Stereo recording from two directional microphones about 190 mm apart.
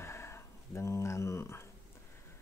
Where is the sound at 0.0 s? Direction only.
15° left (ahead or behind).